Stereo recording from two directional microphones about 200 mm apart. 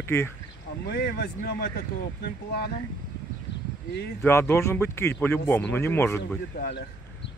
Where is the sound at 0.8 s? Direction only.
55° left (ahead or behind).